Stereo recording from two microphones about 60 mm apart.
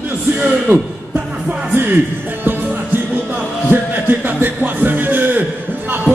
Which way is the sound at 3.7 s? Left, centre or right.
Right.